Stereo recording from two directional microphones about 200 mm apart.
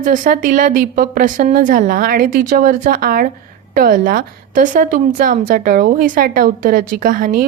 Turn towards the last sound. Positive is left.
turn(degrees=-45)  # may be behind; listen again after turning